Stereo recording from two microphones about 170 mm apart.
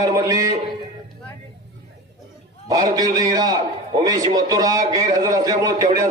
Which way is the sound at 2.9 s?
20° right (ahead or behind).